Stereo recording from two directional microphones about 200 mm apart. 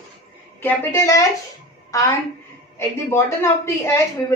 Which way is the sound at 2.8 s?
15° left (ahead or behind).